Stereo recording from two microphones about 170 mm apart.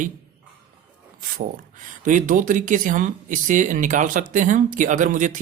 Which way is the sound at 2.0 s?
50° right (ahead or behind).